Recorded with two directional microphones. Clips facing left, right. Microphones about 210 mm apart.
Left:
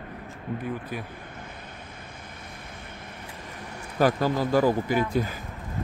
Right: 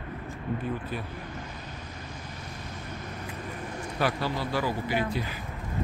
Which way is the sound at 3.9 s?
45° left (ahead or behind).